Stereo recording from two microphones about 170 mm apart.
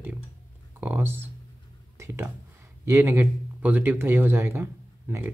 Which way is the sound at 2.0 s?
15° right (ahead or behind).